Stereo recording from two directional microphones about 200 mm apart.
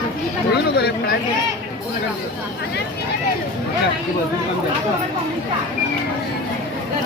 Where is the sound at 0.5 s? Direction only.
55° left (ahead or behind).